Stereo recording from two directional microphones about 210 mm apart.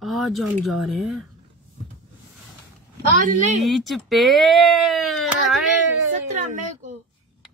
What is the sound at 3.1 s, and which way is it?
Speech, 35° right (ahead or behind).